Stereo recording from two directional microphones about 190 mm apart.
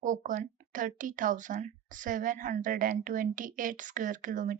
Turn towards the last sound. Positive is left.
turn(degrees=-40)  # may be behind; listen again after turning